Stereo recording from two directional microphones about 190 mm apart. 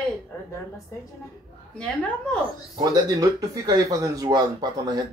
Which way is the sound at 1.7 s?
5° left (ahead or behind).